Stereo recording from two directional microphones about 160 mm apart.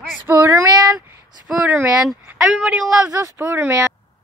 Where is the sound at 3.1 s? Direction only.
15° right (ahead or behind).